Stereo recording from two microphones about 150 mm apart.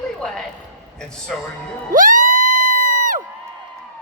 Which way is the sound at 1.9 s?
60° right (ahead or behind).